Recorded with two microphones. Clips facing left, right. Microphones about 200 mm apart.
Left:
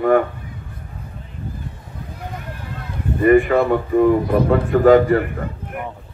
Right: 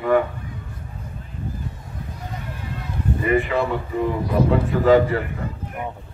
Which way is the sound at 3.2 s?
50° left (ahead or behind).